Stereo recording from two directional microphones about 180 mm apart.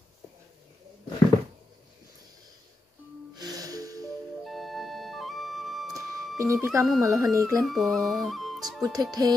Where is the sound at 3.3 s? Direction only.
20° right (ahead or behind).